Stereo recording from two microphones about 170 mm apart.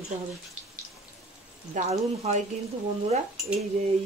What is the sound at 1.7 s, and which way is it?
Speech, 40° right (ahead or behind).